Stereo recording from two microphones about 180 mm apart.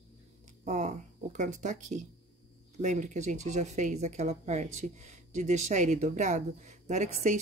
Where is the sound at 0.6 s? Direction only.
40° right (ahead or behind).